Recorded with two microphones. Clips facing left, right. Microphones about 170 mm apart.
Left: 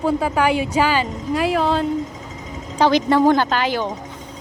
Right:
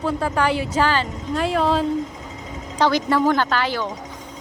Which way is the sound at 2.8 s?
20° left (ahead or behind).